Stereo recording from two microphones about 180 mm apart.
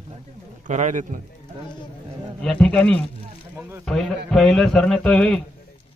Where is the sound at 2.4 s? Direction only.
5° left (ahead or behind).